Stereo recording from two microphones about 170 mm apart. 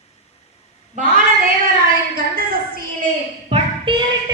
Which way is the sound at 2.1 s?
60° right (ahead or behind).